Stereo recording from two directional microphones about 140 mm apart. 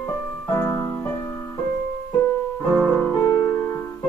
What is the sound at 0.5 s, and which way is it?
Music, 20° left (ahead or behind).